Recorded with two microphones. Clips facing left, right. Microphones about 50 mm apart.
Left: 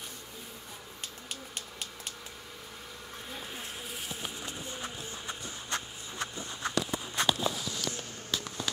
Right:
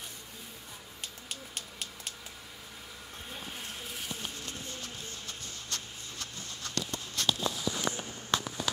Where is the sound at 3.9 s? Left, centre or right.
Centre.